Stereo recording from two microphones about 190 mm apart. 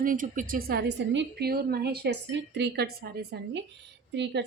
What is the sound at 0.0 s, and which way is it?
A woman's voice, 45° right (ahead or behind).